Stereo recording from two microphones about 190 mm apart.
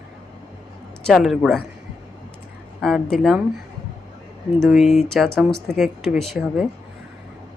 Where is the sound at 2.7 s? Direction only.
Centre (ahead or behind).